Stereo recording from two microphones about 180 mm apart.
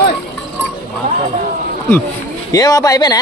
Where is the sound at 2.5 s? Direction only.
20° left (ahead or behind).